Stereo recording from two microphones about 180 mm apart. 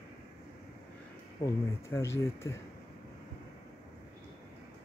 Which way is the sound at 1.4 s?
15° left (ahead or behind).